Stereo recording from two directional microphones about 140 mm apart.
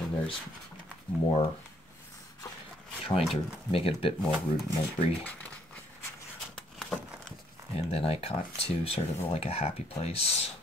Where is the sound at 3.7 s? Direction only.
40° left (ahead or behind).